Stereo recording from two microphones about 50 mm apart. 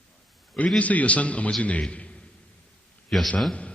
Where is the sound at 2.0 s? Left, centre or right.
Left.